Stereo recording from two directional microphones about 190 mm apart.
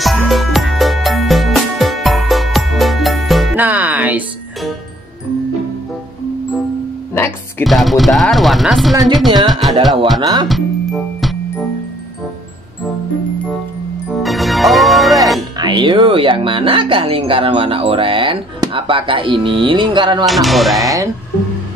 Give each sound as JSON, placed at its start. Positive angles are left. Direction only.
{"t": 0.0, "sound": "music", "side_deg": 0}
{"t": 7.2, "sound": "music", "side_deg": 10}
{"t": 7.6, "sound": "speech", "side_deg": 0}
{"t": 9.5, "sound": "music", "side_deg": 0}
{"t": 10.2, "sound": "speech", "side_deg": -25}
{"t": 10.5, "sound": "music", "side_deg": 0}
{"t": 14.1, "sound": "organ", "side_deg": 0}
{"t": 15.6, "sound": "speech", "side_deg": -25}
{"t": 20.2, "sound": "speech", "side_deg": 0}